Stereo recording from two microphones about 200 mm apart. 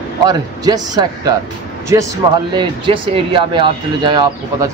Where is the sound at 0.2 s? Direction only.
20° right (ahead or behind).